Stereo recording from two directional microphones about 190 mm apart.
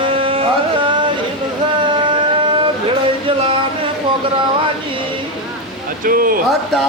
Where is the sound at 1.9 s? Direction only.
25° right (ahead or behind).